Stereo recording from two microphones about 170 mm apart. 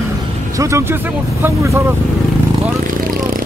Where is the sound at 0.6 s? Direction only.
15° right (ahead or behind).